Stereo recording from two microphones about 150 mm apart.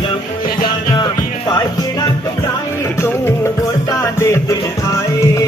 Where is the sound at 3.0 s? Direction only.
20° left (ahead or behind).